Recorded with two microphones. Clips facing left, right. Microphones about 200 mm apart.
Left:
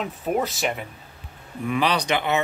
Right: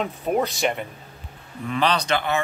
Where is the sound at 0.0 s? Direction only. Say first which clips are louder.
Right 2 dB; centre (ahead or behind).